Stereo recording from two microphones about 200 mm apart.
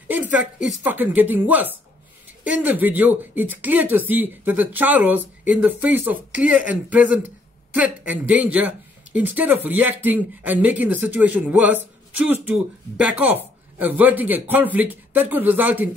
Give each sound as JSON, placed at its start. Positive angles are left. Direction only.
{"t": 0.1, "sound": "speech", "side_deg": -5}